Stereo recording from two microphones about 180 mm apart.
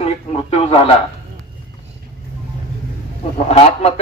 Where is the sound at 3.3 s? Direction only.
35° left (ahead or behind).